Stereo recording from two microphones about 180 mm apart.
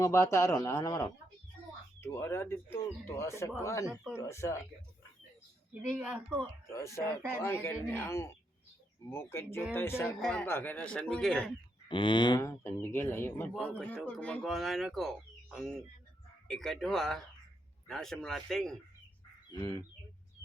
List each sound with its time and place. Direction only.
0.0 s speech: 15° left (ahead or behind)
6.0 s speech: 5° right (ahead or behind)
6.4 s speech: 15° left (ahead or behind)
11.9 s speech: 25° left (ahead or behind); by 18.8 s 5° left (ahead or behind)
19.5 s bird: 20° left (ahead or behind)